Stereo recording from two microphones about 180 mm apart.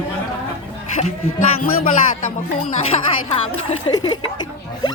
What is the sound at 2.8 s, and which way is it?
Speech, 35° left (ahead or behind).